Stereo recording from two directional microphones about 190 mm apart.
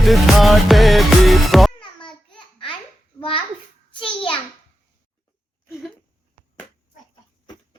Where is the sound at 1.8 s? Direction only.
25° left (ahead or behind).